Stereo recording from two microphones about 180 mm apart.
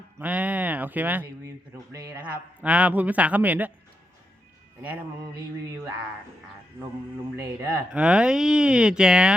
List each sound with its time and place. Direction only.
0.2 s a man's voice: 10° right (ahead or behind)
7.3 s a man's voice: 15° right (ahead or behind)
8.0 s speech: 5° right (ahead or behind)